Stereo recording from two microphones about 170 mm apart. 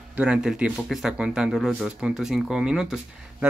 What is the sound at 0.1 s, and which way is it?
Speech, 5° right (ahead or behind).